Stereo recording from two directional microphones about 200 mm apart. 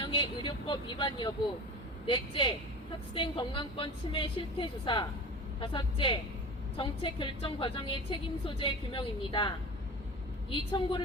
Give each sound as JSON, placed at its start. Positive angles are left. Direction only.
{"t": 0.0, "sound": "a woman's voice", "side_deg": 25}